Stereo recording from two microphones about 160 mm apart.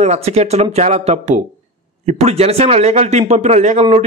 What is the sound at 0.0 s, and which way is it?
A man's voice, 40° right (ahead or behind).